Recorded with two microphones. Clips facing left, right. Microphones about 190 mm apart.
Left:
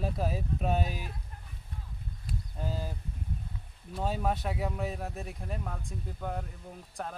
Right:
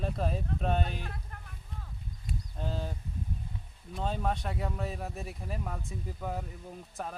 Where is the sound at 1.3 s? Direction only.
65° right (ahead or behind).